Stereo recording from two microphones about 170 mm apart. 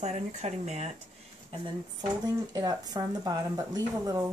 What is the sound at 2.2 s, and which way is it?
Speech, 20° right (ahead or behind).